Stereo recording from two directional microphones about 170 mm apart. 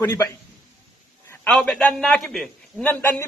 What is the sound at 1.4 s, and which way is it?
A man's voice, centre (ahead or behind).